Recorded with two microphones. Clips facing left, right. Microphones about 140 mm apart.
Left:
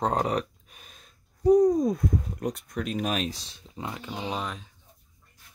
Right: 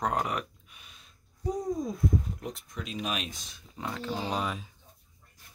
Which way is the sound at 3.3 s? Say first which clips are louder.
Left 3 dB; 30° left (ahead or behind).